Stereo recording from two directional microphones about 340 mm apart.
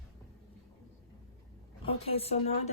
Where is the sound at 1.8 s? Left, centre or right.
Centre.